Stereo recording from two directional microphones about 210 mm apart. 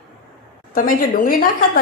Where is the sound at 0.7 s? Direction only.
40° left (ahead or behind).